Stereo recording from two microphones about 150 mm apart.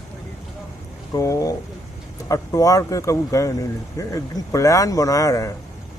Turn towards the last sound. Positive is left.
turn(degrees=20)  # may be behind; listen again after turning